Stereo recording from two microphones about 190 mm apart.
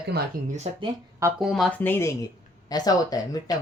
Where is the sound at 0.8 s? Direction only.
15° right (ahead or behind).